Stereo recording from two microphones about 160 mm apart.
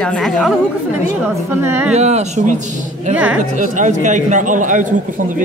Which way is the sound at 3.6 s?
50° right (ahead or behind).